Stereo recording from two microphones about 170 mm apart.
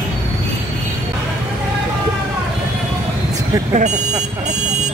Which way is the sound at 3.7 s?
45° right (ahead or behind).